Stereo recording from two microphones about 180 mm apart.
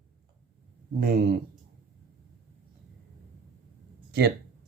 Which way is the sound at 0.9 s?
60° right (ahead or behind).